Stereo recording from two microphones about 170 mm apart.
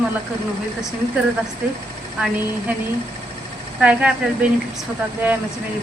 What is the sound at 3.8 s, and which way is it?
Speech, 5° right (ahead or behind).